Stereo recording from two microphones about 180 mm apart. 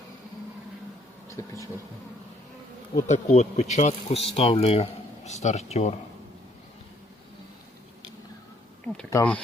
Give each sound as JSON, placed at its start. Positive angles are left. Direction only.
{"t": 1.4, "sound": "speech", "side_deg": 20}
{"t": 3.1, "sound": "speech", "side_deg": 40}
{"t": 8.8, "sound": "a sound", "side_deg": 5}
{"t": 9.0, "sound": "speech", "side_deg": 10}